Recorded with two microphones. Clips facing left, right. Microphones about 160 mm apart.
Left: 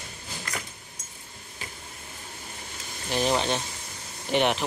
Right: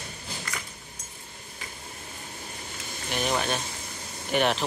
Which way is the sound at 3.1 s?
30° left (ahead or behind).